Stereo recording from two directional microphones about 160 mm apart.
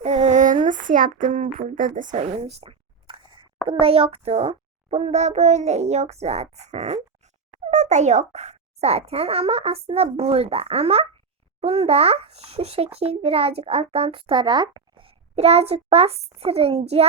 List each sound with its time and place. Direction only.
0.0 s child singing: 45° right (ahead or behind)
3.7 s a child's voice: 35° right (ahead or behind)